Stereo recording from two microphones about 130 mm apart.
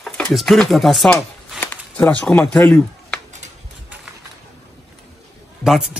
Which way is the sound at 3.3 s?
65° right (ahead or behind).